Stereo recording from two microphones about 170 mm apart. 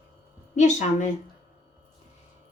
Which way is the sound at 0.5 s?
45° left (ahead or behind).